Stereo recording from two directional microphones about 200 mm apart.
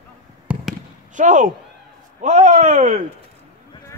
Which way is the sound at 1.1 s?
40° right (ahead or behind).